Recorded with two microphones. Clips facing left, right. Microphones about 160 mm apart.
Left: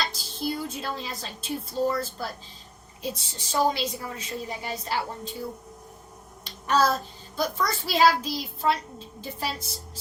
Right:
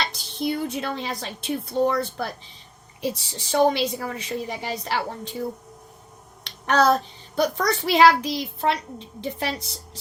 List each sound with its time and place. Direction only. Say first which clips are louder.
0.0 s a child's voice: right 4 dB; 70° right (ahead or behind)